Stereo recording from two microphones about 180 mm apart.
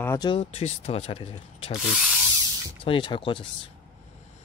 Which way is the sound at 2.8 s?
30° left (ahead or behind).